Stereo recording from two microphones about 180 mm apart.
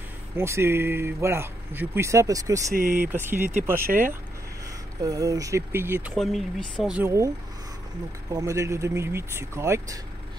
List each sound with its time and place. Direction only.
0.4 s speech: 15° right (ahead or behind)
2.7 s speech: 45° right (ahead or behind)
3.0 s speech: 10° right (ahead or behind)
5.0 s speech: 20° right (ahead or behind)
6.1 s speech: centre (ahead or behind); by 9.9 s 15° right (ahead or behind)